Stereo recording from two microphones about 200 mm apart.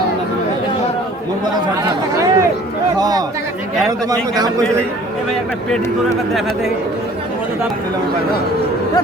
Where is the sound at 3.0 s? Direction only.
20° right (ahead or behind).